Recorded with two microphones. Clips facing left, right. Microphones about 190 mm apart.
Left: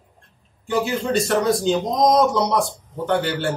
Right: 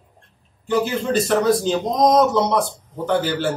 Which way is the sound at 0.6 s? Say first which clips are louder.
Right 1 dB; 5° right (ahead or behind).